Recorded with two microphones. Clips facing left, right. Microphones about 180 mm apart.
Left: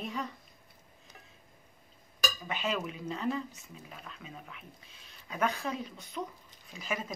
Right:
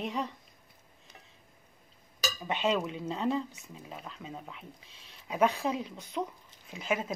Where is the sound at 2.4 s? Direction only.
25° right (ahead or behind).